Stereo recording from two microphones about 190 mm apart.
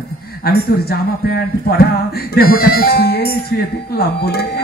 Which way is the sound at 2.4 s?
55° left (ahead or behind).